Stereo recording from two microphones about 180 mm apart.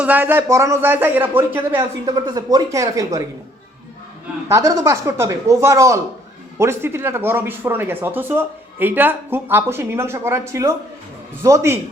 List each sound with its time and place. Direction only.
0.0 s speech: 10° right (ahead or behind)
2.0 s speech: 20° right (ahead or behind)
4.4 s speech: 20° right (ahead or behind)